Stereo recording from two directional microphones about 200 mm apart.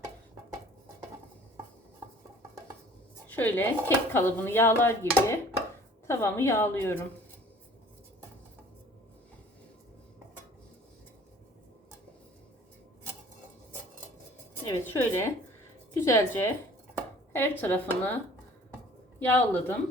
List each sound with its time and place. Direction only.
3.2 s speech: 10° left (ahead or behind)
14.7 s speech: 10° left (ahead or behind)
19.2 s speech: 10° left (ahead or behind)